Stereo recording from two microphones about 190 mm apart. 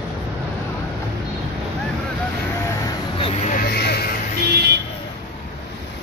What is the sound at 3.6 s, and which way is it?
Vehicle, 55° left (ahead or behind).